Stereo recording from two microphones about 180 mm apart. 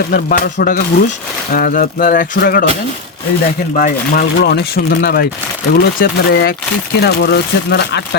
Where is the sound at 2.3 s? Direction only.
60° left (ahead or behind).